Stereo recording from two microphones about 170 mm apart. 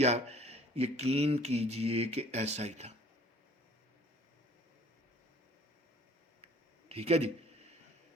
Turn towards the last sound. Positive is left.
turn(degrees=-35)  # may be behind; listen again after turning